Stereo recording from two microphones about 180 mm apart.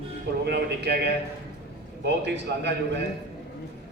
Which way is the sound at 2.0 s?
75° right (ahead or behind).